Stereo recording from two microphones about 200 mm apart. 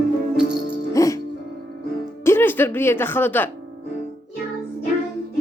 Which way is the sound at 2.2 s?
10° left (ahead or behind).